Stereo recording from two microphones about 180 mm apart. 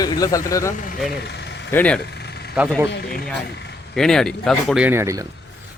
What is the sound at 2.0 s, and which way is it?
Vehicle, 65° left (ahead or behind).